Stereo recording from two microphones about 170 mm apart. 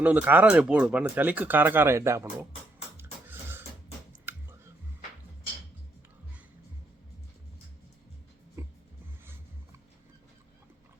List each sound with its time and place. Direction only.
0.0 s speech: 10° right (ahead or behind)
3.0 s a sound: 15° right (ahead or behind)
8.6 s music: 15° right (ahead or behind)